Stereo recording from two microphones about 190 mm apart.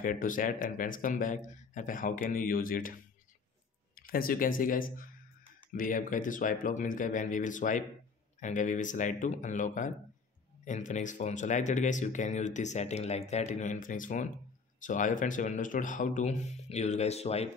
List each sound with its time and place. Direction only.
0.0 s speech: 45° left (ahead or behind)